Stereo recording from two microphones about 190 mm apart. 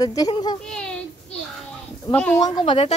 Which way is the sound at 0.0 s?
20° left (ahead or behind).